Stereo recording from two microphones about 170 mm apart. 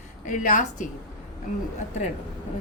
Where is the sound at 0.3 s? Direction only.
50° left (ahead or behind).